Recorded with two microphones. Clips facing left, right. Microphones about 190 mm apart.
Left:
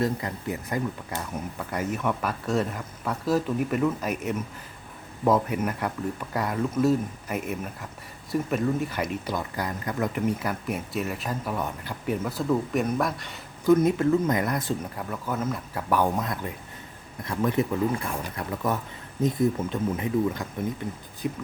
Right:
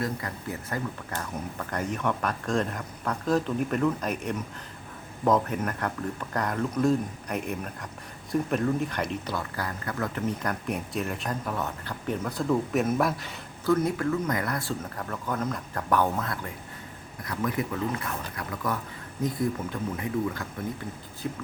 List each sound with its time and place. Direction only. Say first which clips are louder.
0.0 s speech: left 4 dB; 20° left (ahead or behind); by 13.4 s centre (ahead or behind)
13.7 s speech: left 5 dB; 20° left (ahead or behind)